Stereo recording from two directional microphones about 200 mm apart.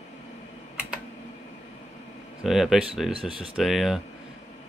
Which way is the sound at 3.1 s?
25° right (ahead or behind).